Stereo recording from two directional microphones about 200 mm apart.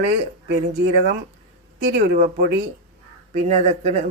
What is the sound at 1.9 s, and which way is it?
Speech, 40° right (ahead or behind).